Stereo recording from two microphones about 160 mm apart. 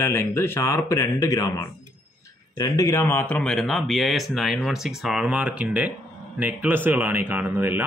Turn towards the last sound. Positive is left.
turn(degrees=-15)  # may be behind; listen again after turning